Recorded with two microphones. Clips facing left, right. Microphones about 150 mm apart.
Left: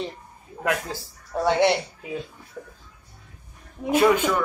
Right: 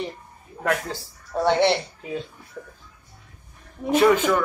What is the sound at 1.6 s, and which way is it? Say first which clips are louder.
Speech: even; 25° right (ahead or behind).